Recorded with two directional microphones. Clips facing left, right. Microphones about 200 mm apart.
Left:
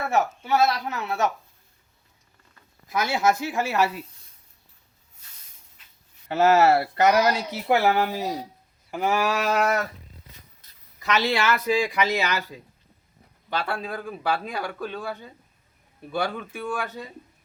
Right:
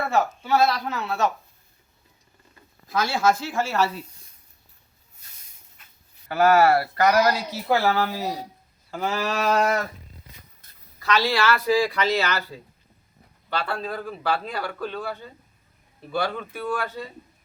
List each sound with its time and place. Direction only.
0.1 s a man's voice: 20° left (ahead or behind)
2.8 s a man's voice: 20° left (ahead or behind)
6.2 s a man's voice: 25° left (ahead or behind)
9.6 s a sound: 30° right (ahead or behind)
10.6 s a sound: 50° right (ahead or behind)
11.0 s a man's voice: 20° left (ahead or behind)
16.3 s a man's voice: 15° left (ahead or behind)